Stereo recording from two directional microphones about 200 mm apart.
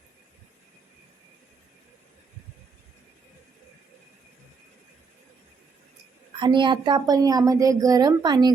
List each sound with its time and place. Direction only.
6.4 s speech: 25° right (ahead or behind)